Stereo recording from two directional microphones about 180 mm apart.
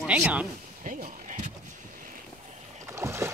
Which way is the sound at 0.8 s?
45° right (ahead or behind).